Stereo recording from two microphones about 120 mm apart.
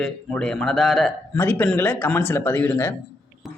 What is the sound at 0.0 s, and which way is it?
Speech, 10° left (ahead or behind).